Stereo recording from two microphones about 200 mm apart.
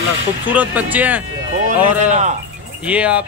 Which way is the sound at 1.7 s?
35° right (ahead or behind).